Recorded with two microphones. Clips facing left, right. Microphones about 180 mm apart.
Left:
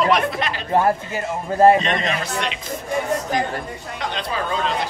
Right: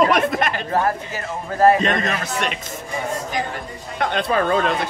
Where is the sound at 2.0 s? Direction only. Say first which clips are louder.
Even; 50° right (ahead or behind).